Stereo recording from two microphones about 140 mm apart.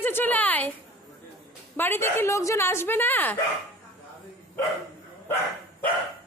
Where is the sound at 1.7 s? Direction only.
15° left (ahead or behind).